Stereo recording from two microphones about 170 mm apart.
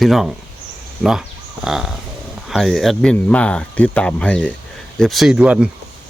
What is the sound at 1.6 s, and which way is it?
Speech, 5° right (ahead or behind).